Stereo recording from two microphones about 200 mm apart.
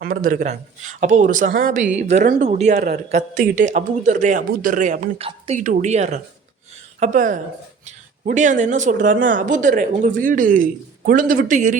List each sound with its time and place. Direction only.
0.0 s a man's voice: 45° right (ahead or behind)